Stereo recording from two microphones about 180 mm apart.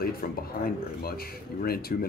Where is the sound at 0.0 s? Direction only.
55° left (ahead or behind).